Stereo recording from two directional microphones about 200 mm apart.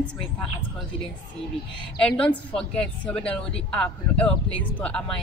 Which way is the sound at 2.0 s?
5° left (ahead or behind).